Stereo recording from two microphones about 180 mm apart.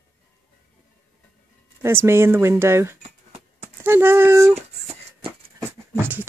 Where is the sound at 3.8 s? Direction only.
10° right (ahead or behind).